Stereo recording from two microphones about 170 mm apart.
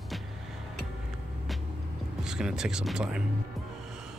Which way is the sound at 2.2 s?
5° right (ahead or behind).